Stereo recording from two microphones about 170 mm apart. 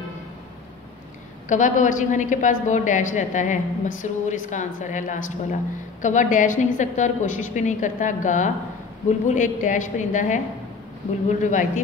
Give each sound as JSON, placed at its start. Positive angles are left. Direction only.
{"t": 1.5, "sound": "a woman's voice", "side_deg": 50}